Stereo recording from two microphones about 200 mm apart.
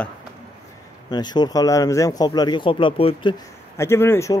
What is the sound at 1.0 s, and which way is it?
Speech, 20° left (ahead or behind).